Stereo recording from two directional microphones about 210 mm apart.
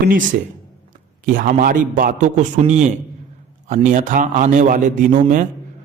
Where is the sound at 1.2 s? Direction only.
40° right (ahead or behind).